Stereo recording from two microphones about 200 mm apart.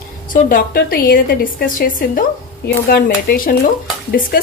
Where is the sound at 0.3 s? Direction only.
45° left (ahead or behind).